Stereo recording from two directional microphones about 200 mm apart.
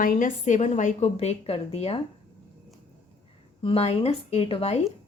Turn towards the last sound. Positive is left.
turn(degrees=30)  # may be behind; listen again after turning